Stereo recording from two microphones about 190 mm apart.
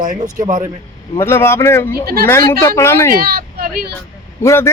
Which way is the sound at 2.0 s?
55° right (ahead or behind).